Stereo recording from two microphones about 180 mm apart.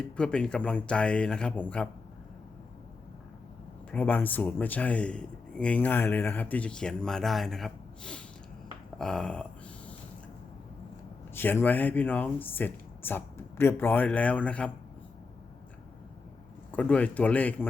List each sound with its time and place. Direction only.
0.0 s speech: 5° left (ahead or behind)
3.9 s speech: 10° left (ahead or behind)
9.0 s a sound: 5° left (ahead or behind)
11.3 s speech: 10° left (ahead or behind)
16.7 s speech: 10° left (ahead or behind)